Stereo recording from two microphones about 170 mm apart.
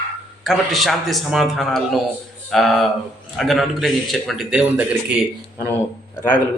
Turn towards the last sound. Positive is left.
turn(degrees=25)  # may be behind; listen again after turning